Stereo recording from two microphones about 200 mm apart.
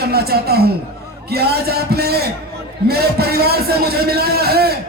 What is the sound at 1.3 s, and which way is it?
Speech, 50° right (ahead or behind).